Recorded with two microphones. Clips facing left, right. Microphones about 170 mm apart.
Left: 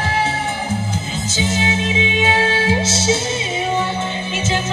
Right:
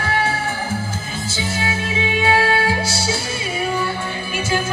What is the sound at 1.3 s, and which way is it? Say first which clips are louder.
Music: left 5 dB; 20° left (ahead or behind).